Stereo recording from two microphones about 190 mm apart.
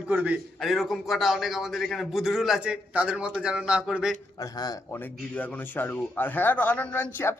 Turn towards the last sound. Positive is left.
turn(degrees=10)  # may be behind; listen again after turning